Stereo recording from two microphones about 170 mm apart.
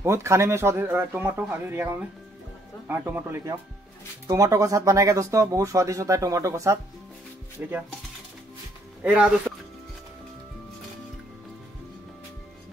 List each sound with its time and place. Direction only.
0.0 s speech: 15° right (ahead or behind)
9.0 s speech: 10° right (ahead or behind)